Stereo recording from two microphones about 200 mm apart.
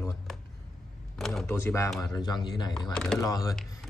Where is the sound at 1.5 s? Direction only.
10° left (ahead or behind).